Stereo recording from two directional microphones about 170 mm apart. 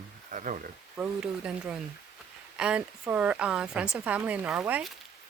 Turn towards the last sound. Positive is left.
turn(degrees=-10)  # may be behind; listen again after turning